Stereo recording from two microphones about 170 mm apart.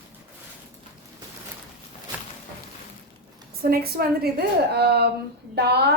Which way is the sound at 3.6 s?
65° right (ahead or behind).